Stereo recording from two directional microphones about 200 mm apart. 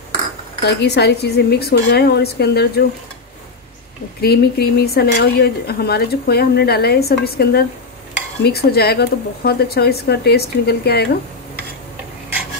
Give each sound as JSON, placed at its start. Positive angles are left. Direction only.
{"t": 0.7, "sound": "a woman's voice", "side_deg": 55}
{"t": 4.2, "sound": "speech", "side_deg": 50}